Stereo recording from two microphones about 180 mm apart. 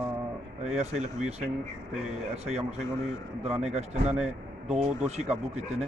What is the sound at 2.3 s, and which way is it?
Speech, 35° right (ahead or behind).